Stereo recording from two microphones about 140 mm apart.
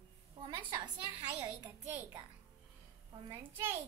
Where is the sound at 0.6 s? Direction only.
30° right (ahead or behind).